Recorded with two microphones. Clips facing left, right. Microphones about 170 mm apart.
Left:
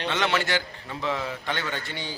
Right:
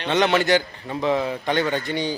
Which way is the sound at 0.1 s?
20° right (ahead or behind).